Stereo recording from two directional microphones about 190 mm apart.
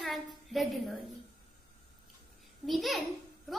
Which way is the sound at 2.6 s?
Centre (ahead or behind).